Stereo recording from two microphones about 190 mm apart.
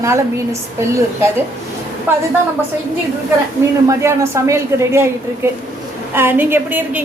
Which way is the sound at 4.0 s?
15° right (ahead or behind).